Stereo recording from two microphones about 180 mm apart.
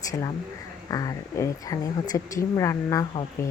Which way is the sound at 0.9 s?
20° left (ahead or behind).